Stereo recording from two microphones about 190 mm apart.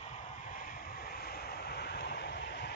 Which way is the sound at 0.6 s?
50° left (ahead or behind).